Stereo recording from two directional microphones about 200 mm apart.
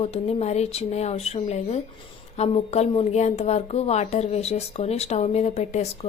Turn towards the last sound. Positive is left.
turn(degrees=35)  # may be behind; listen again after turning